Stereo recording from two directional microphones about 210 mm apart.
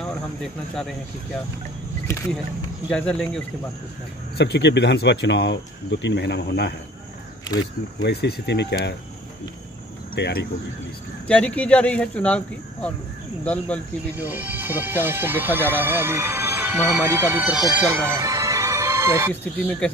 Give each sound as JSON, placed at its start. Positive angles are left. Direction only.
{"t": 0.0, "sound": "cricket", "side_deg": 5}
{"t": 2.9, "sound": "speech", "side_deg": 5}
{"t": 4.4, "sound": "speech", "side_deg": 55}
{"t": 8.0, "sound": "speech", "side_deg": 50}
{"t": 10.1, "sound": "speech", "side_deg": 50}
{"t": 11.2, "sound": "speech", "side_deg": 5}
{"t": 14.1, "sound": "speech", "side_deg": -10}